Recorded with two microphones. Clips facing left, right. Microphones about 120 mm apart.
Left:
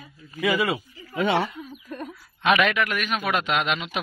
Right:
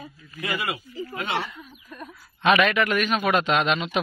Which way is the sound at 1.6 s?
35° left (ahead or behind).